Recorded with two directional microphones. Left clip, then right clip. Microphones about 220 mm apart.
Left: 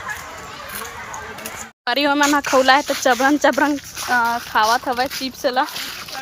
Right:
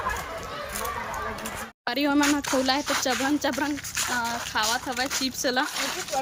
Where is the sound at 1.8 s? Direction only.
Centre (ahead or behind).